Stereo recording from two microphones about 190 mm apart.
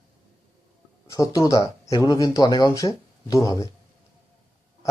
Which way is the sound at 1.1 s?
20° left (ahead or behind).